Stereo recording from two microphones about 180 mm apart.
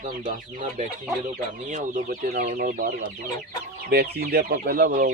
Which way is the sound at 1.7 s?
50° right (ahead or behind).